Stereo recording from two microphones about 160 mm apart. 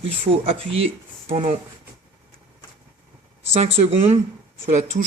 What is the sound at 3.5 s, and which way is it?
Speech, 40° right (ahead or behind).